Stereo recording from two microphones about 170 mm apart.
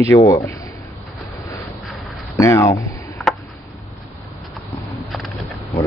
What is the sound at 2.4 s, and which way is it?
Speech, 15° left (ahead or behind).